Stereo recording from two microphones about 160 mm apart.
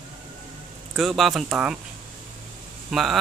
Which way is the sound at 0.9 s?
Centre (ahead or behind).